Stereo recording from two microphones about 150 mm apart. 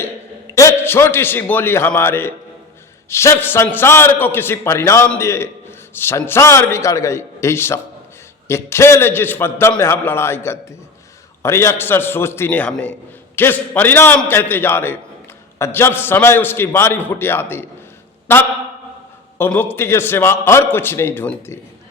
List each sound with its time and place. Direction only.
0.5 s a man's voice: 20° left (ahead or behind)
19.4 s a man's voice: 15° left (ahead or behind)